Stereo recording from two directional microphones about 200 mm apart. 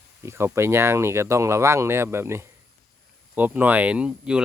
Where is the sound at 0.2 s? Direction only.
15° right (ahead or behind).